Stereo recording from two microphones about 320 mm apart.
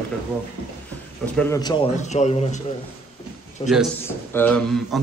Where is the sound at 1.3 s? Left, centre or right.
Centre.